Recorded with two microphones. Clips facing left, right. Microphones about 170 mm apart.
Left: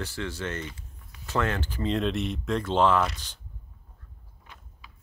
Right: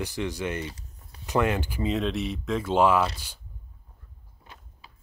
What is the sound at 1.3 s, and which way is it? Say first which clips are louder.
Speech: right 3 dB; 15° right (ahead or behind).